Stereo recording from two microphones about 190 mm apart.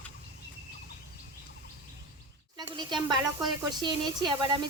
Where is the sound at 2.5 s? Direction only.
25° right (ahead or behind).